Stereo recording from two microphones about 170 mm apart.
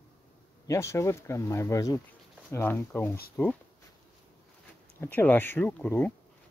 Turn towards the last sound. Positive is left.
turn(degrees=10)  # may be behind; listen again after turning